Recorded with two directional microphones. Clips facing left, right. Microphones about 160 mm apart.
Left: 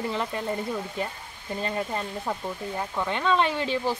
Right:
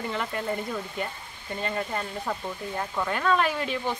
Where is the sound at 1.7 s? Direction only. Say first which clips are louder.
Left 1 dB; 15° left (ahead or behind).